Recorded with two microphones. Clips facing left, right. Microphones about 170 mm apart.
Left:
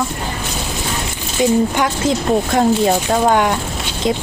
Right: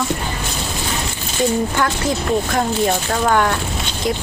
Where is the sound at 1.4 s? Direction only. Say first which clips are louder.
Left 3 dB; 15° left (ahead or behind).